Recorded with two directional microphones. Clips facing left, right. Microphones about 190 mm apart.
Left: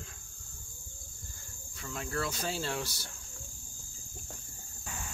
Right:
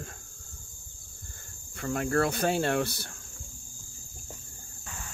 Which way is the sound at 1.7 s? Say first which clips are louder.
Right 10 dB; 60° right (ahead or behind).